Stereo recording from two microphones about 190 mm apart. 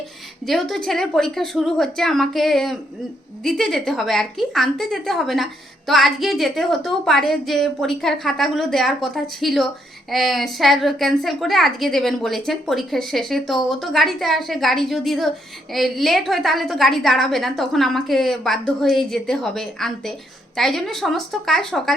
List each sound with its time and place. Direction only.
0.4 s a woman's voice: centre (ahead or behind)